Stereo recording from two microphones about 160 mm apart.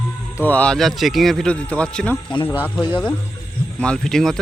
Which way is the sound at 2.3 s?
30° left (ahead or behind).